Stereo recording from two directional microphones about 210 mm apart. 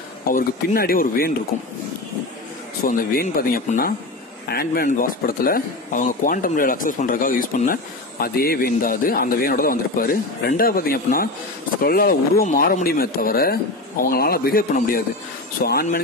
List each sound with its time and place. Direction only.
0.3 s speech: 45° left (ahead or behind)
2.8 s speech: 45° left (ahead or behind)